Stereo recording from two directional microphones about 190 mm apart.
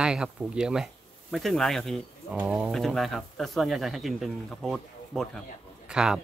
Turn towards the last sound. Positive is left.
turn(degrees=-5)  # may be behind; listen again after turning